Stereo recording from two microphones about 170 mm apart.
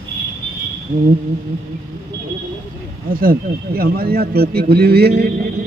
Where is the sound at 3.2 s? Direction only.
60° right (ahead or behind).